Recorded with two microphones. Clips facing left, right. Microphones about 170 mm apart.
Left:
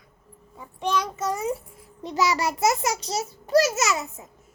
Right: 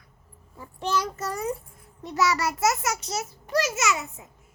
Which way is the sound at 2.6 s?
30° left (ahead or behind).